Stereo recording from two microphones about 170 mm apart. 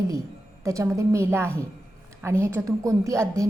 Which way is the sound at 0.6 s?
20° right (ahead or behind).